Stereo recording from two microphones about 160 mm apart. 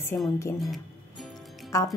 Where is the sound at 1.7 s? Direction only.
20° left (ahead or behind).